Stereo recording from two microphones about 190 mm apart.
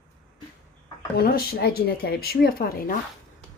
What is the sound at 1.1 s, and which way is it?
Speech, 55° left (ahead or behind).